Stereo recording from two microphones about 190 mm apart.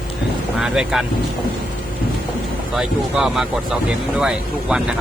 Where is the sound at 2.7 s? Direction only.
5° right (ahead or behind).